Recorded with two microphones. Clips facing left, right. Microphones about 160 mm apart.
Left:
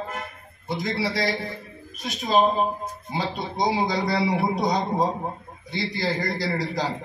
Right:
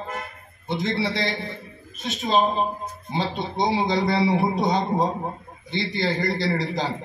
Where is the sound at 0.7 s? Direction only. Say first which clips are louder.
Right 2 dB; 25° right (ahead or behind).